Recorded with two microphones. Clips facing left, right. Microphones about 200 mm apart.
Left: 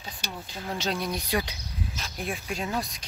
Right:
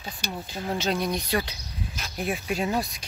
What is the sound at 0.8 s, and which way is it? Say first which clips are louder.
Speech: right 3 dB; centre (ahead or behind).